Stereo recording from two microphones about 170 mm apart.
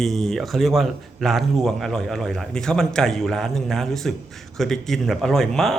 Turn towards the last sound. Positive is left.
turn(degrees=0)  # may be behind; listen again after turning